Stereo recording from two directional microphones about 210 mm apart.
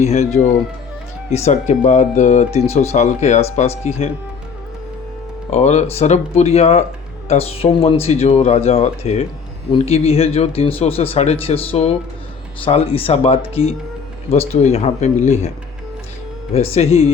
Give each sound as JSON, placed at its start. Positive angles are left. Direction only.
{"t": 0.0, "sound": "speech", "side_deg": 30}
{"t": 5.5, "sound": "speech", "side_deg": 30}
{"t": 16.7, "sound": "speech", "side_deg": 30}